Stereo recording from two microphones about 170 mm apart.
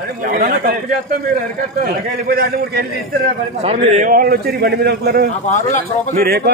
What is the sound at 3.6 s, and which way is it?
A man's voice, 40° right (ahead or behind).